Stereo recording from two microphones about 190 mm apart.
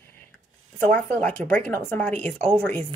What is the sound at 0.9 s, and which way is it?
Speech, 5° left (ahead or behind).